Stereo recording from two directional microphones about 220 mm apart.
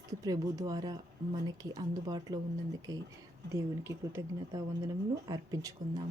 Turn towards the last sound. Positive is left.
turn(degrees=-15)  # may be behind; listen again after turning